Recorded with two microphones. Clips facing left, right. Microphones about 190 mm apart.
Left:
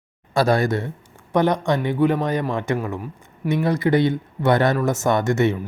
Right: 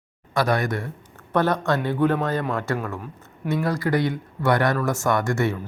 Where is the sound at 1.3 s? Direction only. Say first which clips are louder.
Left 2 dB; 15° left (ahead or behind).